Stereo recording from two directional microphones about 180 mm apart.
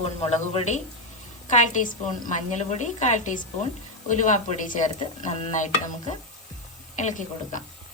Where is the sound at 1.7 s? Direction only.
45° left (ahead or behind).